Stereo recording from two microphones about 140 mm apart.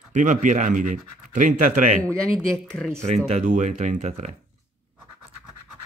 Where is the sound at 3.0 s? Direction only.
55° right (ahead or behind).